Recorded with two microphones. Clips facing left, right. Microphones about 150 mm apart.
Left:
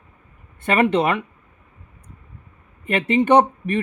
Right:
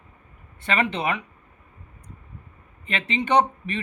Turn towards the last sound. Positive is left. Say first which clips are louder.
# left 5 dB
turn(degrees=50)  # may be behind; listen again after turning